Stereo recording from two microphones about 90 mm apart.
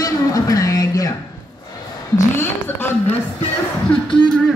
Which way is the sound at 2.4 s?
25° left (ahead or behind).